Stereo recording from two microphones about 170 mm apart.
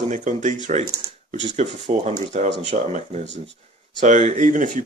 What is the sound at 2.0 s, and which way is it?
Speech, 45° right (ahead or behind).